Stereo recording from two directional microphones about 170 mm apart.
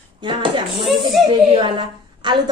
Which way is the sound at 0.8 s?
Centre (ahead or behind).